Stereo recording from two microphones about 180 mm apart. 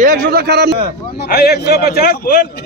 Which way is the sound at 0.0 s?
50° right (ahead or behind).